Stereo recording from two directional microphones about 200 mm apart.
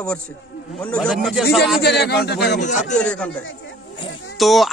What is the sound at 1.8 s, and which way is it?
Speech, 55° left (ahead or behind).